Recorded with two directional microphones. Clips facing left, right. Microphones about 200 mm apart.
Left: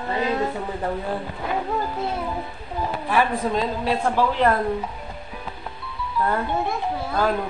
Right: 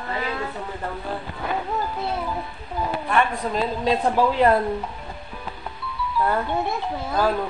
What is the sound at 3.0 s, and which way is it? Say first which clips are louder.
Speech: left 2 dB; 5° left (ahead or behind).